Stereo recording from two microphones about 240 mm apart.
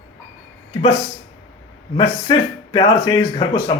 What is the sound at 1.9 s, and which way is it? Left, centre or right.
Speech, centre.